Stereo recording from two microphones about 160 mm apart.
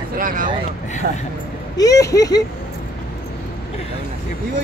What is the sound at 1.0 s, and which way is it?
Speech, 75° right (ahead or behind).